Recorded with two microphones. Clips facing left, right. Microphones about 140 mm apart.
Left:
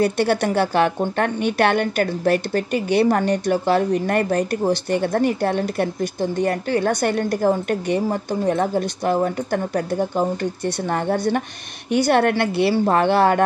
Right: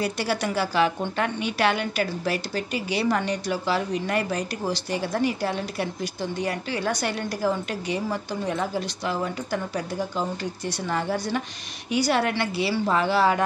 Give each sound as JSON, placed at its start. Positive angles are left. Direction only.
{"t": 0.0, "sound": "a woman's voice", "side_deg": 55}